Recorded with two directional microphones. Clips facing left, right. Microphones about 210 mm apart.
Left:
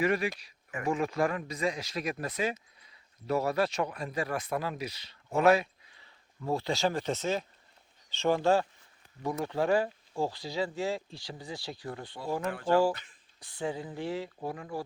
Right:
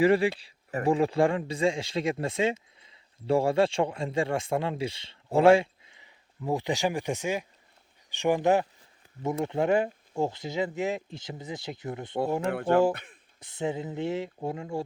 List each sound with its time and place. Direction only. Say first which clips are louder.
0.0 s speech: right 7 dB; 30° right (ahead or behind)
12.5 s speech: right 2 dB; 60° right (ahead or behind)
13.4 s speech: right 4 dB; 20° right (ahead or behind)